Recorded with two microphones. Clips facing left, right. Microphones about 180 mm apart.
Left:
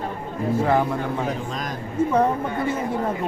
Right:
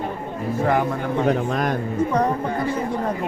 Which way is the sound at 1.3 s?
65° right (ahead or behind).